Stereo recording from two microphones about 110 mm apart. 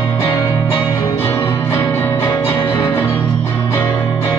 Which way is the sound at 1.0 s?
25° left (ahead or behind).